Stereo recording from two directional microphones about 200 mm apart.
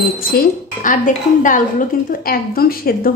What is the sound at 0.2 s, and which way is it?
Speech, 45° left (ahead or behind).